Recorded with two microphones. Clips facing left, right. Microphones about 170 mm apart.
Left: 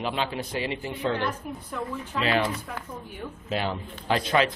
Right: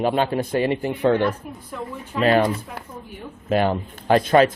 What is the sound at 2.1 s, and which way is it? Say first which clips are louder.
Speech: right 8 dB; 45° right (ahead or behind).